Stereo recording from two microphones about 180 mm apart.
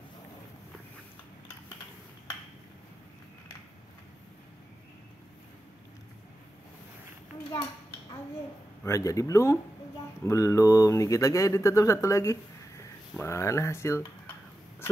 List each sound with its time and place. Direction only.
8.8 s speech: 15° left (ahead or behind)